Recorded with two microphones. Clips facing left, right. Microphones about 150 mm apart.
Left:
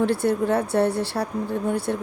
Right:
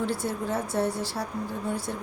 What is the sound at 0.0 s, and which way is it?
Speech, 65° left (ahead or behind).